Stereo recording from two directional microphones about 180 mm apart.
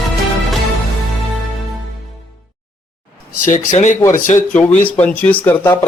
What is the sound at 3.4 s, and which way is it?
Speech, 45° left (ahead or behind).